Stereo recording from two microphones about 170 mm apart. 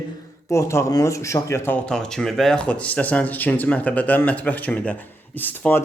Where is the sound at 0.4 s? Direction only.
15° left (ahead or behind).